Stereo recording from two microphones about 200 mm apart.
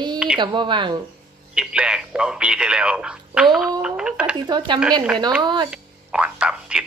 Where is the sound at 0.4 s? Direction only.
25° right (ahead or behind).